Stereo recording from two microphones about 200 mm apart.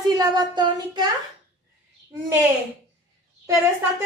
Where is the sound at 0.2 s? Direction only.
20° right (ahead or behind).